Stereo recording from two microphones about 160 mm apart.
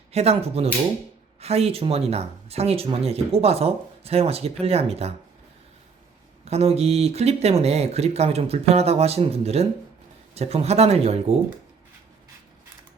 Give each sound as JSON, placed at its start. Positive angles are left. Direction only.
{"t": 0.1, "sound": "speech", "side_deg": -40}
{"t": 6.4, "sound": "speech", "side_deg": -40}